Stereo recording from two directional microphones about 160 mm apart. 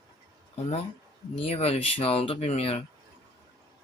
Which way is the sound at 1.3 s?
35° left (ahead or behind).